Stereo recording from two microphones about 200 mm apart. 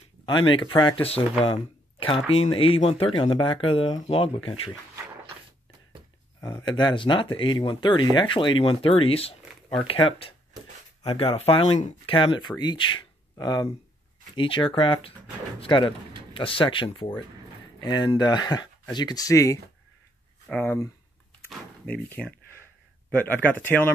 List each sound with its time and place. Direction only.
0.2 s speech: 25° left (ahead or behind)
6.4 s speech: 20° left (ahead or behind)